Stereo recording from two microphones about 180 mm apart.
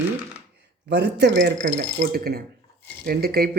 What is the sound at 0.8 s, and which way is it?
Speech, 70° right (ahead or behind).